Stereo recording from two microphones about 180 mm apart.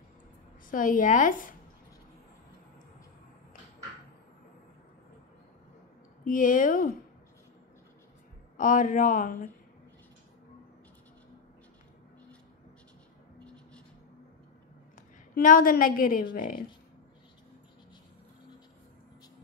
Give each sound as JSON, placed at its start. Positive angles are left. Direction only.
{"t": 0.7, "sound": "speech", "side_deg": 50}
{"t": 6.2, "sound": "speech", "side_deg": 50}
{"t": 8.5, "sound": "speech", "side_deg": 45}
{"t": 13.4, "sound": "music", "side_deg": 5}
{"t": 15.3, "sound": "speech", "side_deg": 50}